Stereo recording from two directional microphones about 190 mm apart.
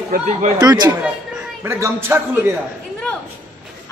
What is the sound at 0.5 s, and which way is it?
A man's voice, 20° right (ahead or behind).